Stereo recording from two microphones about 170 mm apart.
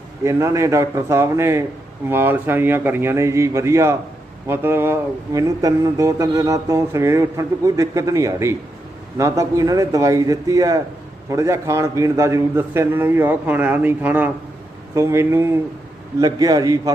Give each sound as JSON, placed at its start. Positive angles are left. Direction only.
{"t": 0.3, "sound": "a man's voice", "side_deg": -15}